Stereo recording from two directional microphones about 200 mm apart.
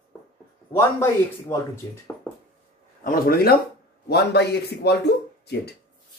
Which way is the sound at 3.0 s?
45° left (ahead or behind).